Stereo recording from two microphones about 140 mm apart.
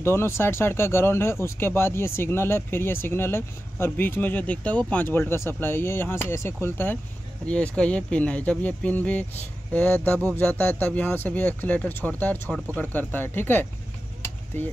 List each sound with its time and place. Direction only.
0.0 s speech: 15° left (ahead or behind)